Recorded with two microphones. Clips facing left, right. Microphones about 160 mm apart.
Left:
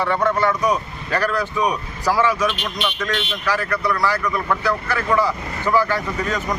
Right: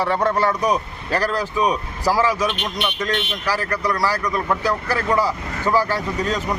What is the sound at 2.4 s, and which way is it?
Speech, 15° right (ahead or behind).